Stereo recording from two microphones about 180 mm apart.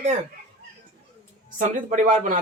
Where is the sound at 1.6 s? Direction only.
45° right (ahead or behind).